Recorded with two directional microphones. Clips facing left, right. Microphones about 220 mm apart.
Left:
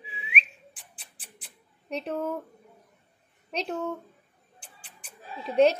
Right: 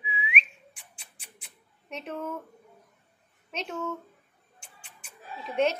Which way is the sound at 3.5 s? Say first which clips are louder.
Left 3 dB; 35° left (ahead or behind).